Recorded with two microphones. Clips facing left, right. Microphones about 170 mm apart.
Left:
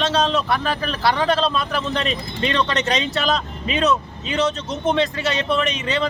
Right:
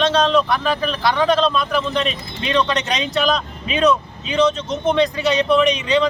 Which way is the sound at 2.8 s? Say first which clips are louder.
Right 1 dB; centre (ahead or behind).